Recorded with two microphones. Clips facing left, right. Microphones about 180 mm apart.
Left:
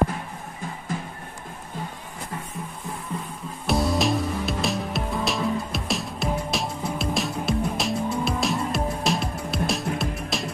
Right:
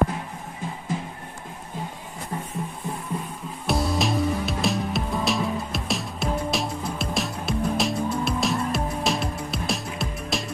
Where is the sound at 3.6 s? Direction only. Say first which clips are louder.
Left 2 dB; centre (ahead or behind).